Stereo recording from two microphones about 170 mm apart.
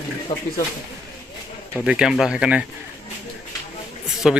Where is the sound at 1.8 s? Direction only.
5° right (ahead or behind).